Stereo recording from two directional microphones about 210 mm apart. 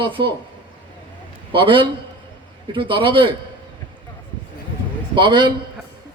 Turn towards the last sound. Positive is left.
turn(degrees=-20)  # may be behind; listen again after turning